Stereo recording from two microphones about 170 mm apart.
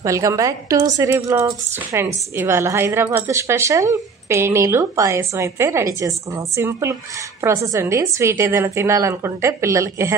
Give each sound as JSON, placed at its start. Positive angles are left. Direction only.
{"t": 0.0, "sound": "a woman's voice", "side_deg": -20}